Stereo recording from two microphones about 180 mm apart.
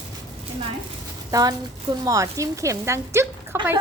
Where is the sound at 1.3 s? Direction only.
20° right (ahead or behind).